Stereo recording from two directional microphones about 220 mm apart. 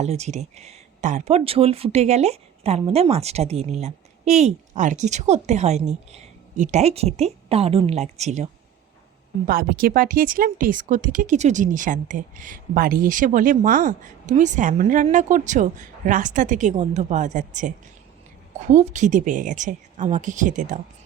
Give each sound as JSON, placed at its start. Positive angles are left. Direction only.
{"t": 0.0, "sound": "speech", "side_deg": -30}
{"t": 9.5, "sound": "speech", "side_deg": -40}